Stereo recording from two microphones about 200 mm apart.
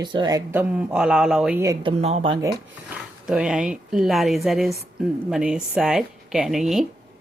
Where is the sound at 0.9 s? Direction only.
5° right (ahead or behind).